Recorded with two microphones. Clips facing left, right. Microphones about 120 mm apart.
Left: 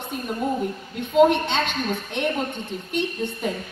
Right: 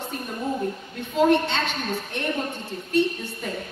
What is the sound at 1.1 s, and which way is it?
A woman's voice, 20° left (ahead or behind).